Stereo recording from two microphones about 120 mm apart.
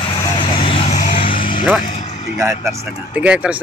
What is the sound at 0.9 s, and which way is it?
Vehicle, 90° left.